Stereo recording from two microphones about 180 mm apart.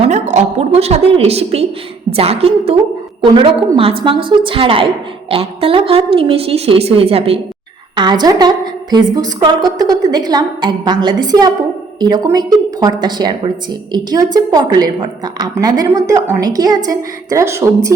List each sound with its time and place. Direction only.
0.1 s a woman's voice: 40° right (ahead or behind); by 17.7 s 15° right (ahead or behind)